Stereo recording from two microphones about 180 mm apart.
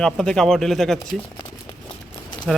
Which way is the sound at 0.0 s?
5° left (ahead or behind).